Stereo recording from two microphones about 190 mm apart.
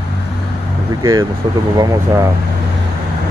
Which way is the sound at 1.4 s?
20° right (ahead or behind).